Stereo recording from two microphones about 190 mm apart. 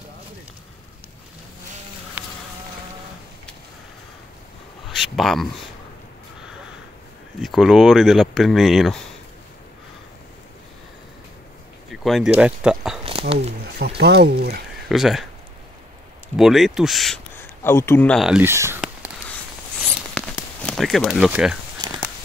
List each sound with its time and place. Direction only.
4.8 s speech: centre (ahead or behind)
7.4 s speech: centre (ahead or behind)
11.9 s speech: centre (ahead or behind)
13.7 s speech: 60° right (ahead or behind)
14.9 s speech: centre (ahead or behind)
16.3 s speech: centre (ahead or behind)
17.6 s speech: 10° left (ahead or behind); by 18.8 s 15° right (ahead or behind)
20.2 s a sound: centre (ahead or behind)
21.8 s a sound: 20° right (ahead or behind)